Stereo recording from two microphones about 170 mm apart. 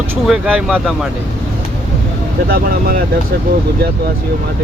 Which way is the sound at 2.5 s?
60° right (ahead or behind).